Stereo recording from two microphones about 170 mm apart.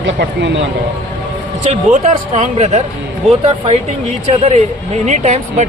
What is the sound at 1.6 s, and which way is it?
Speech, 40° right (ahead or behind).